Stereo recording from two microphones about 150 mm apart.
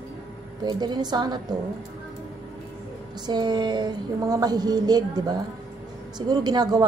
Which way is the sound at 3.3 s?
30° right (ahead or behind).